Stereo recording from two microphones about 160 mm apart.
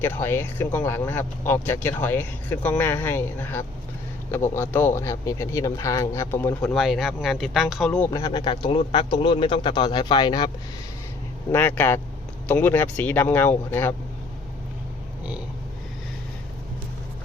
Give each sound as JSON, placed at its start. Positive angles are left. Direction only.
{"t": 0.0, "sound": "speech", "side_deg": 15}
{"t": 6.7, "sound": "speech", "side_deg": 0}
{"t": 8.1, "sound": "speech", "side_deg": 25}
{"t": 11.5, "sound": "speech", "side_deg": 10}